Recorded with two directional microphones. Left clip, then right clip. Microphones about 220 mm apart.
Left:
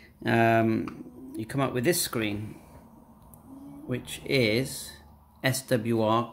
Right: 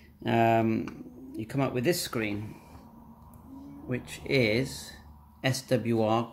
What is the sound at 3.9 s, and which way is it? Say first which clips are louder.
Speech: left 1 dB; 10° left (ahead or behind).